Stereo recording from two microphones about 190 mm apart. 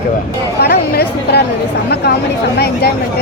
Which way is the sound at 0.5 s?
55° left (ahead or behind).